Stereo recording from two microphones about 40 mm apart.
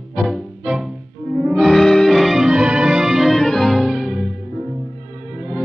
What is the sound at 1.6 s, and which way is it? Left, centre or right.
Music, centre.